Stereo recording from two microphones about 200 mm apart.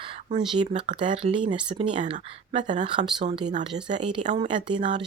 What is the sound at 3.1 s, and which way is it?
Speech, 25° right (ahead or behind).